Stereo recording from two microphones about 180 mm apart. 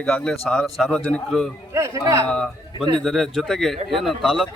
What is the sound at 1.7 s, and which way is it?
Speech, 15° right (ahead or behind).